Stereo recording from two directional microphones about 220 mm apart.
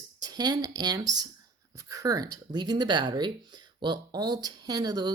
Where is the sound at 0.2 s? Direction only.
20° right (ahead or behind).